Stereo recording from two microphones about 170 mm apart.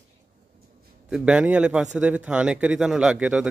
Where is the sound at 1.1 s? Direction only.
5° right (ahead or behind).